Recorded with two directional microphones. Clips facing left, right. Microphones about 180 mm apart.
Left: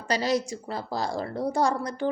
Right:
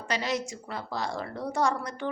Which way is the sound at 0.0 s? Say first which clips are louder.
Left 5 dB; 35° left (ahead or behind).